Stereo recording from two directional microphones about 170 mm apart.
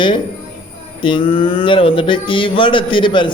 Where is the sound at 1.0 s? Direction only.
30° left (ahead or behind).